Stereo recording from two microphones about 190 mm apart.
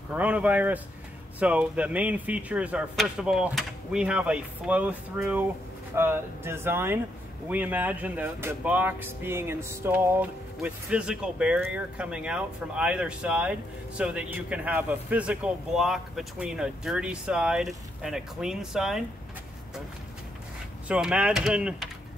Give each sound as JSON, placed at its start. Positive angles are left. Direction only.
{"t": 0.1, "sound": "speech", "side_deg": -5}
{"t": 20.9, "sound": "speech", "side_deg": -5}